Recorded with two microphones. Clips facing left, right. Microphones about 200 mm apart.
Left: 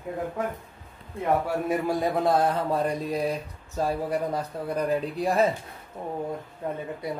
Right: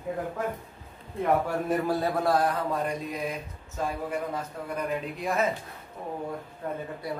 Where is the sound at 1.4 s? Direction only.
10° left (ahead or behind); by 5.5 s 35° left (ahead or behind).